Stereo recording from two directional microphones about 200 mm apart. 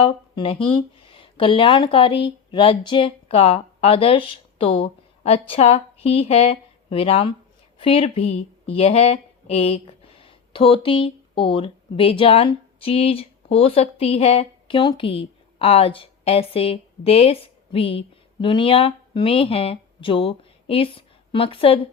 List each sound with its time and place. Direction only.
0.0 s speech: 25° left (ahead or behind)